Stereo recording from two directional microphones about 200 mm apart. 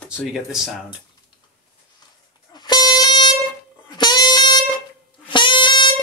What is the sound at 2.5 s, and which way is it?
Air horn, 20° left (ahead or behind).